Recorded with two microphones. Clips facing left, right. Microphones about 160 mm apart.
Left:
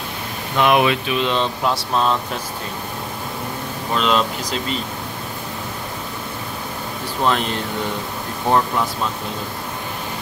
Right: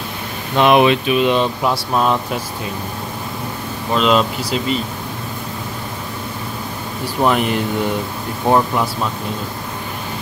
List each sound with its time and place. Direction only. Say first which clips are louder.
0.6 s speech: right 4 dB; 25° right (ahead or behind)
1.1 s speech: right 5 dB; 10° right (ahead or behind)
3.9 s speech: right 4 dB; 5° right (ahead or behind)
7.2 s speech: right 4 dB; 10° right (ahead or behind)